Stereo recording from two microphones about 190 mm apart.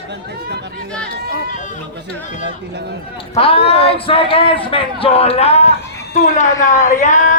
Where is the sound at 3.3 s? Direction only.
30° left (ahead or behind).